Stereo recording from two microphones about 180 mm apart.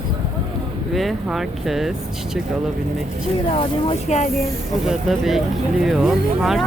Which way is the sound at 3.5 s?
35° left (ahead or behind).